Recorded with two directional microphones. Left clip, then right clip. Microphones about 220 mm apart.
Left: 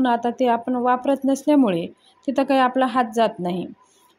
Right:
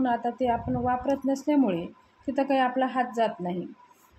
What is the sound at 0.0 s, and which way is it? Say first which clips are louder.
Speech: left 6 dB; 40° left (ahead or behind).